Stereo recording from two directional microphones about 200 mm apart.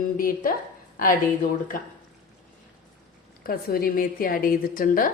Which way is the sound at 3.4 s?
45° left (ahead or behind).